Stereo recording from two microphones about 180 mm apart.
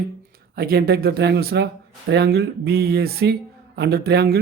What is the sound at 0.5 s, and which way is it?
A man's voice, 55° right (ahead or behind).